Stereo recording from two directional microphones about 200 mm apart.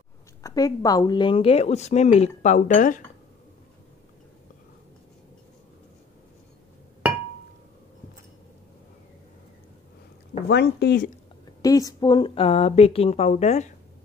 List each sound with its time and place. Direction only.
0.4 s a woman's voice: 15° left (ahead or behind); by 3.0 s 40° left (ahead or behind)
10.5 s speech: 55° left (ahead or behind)
11.6 s a woman's voice: 15° left (ahead or behind); by 13.7 s 35° left (ahead or behind)